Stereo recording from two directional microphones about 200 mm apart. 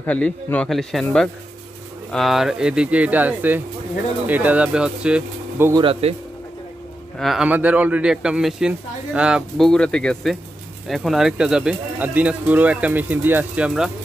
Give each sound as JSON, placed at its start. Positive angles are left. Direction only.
{"t": 0.0, "sound": "speech", "side_deg": 10}
{"t": 5.7, "sound": "speech", "side_deg": -25}
{"t": 7.2, "sound": "speech", "side_deg": 0}